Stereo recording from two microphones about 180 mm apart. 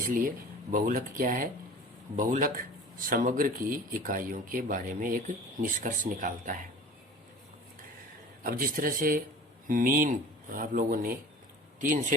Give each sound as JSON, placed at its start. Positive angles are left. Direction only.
{"t": 0.0, "sound": "speech", "side_deg": -50}
{"t": 8.4, "sound": "speech", "side_deg": -50}